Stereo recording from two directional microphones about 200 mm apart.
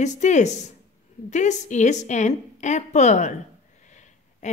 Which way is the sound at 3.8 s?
35° left (ahead or behind).